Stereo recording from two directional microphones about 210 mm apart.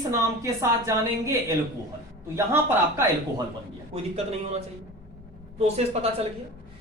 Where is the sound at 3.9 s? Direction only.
30° right (ahead or behind).